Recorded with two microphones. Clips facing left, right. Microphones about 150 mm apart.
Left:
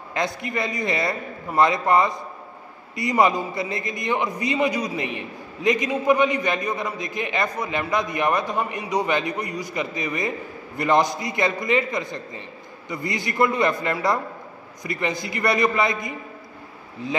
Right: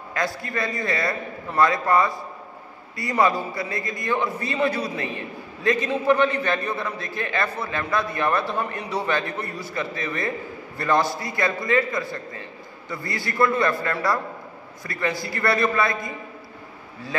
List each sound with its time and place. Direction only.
0.1 s a man's voice: 20° left (ahead or behind)